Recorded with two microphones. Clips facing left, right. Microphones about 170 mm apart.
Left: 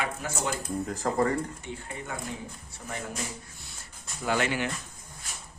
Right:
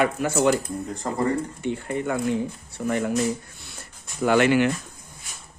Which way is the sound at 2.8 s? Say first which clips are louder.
Right 14 dB; 90° right.